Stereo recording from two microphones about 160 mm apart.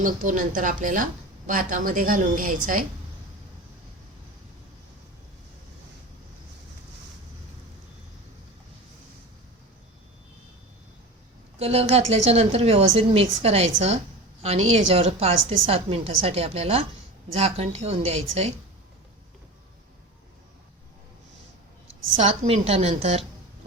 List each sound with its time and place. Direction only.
0.0 s a woman's voice: 55° right (ahead or behind)
11.6 s a woman's voice: 40° right (ahead or behind)
22.2 s a woman's voice: 40° right (ahead or behind)